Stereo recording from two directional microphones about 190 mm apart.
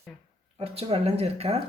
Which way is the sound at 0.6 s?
30° right (ahead or behind).